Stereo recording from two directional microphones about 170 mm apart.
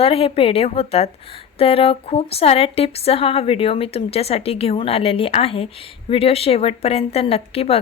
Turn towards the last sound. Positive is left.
turn(degrees=35)  # may be behind; listen again after turning